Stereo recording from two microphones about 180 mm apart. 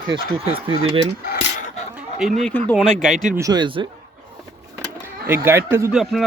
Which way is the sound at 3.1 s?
45° right (ahead or behind).